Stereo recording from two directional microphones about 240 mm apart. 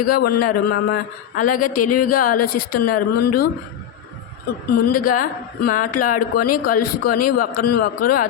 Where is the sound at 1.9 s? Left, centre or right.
Left.